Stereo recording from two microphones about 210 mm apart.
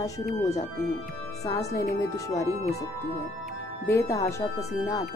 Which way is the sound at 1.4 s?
15° left (ahead or behind).